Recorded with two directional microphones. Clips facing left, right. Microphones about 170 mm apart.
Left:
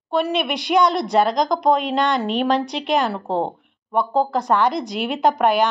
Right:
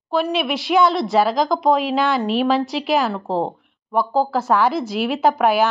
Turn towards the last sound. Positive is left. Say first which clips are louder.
# right 1 dB
turn(degrees=-5)  # may be behind; listen again after turning